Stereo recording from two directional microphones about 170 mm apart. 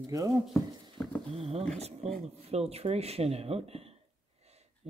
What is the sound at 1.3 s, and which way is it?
Speech, 35° right (ahead or behind).